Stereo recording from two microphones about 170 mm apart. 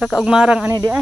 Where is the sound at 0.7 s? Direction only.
15° right (ahead or behind).